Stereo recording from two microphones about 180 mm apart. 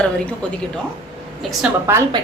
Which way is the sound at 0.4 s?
5° left (ahead or behind).